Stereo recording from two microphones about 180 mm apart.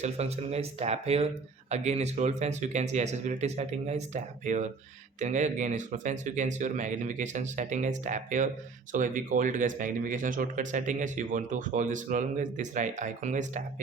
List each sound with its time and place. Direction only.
0.0 s speech: 35° right (ahead or behind)